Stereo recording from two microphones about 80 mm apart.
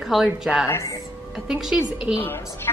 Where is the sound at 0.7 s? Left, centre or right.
Left.